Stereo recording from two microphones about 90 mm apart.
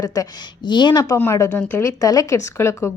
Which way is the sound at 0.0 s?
45° left (ahead or behind).